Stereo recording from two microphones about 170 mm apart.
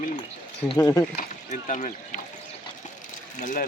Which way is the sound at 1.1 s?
45° left (ahead or behind).